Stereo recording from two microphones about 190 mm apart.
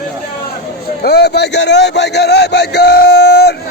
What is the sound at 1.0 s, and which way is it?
A man's voice, 55° left (ahead or behind).